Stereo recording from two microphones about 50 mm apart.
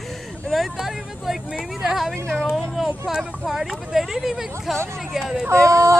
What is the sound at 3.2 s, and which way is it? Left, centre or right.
Speech, centre.